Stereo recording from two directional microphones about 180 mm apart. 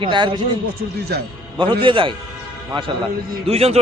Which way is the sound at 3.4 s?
35° right (ahead or behind).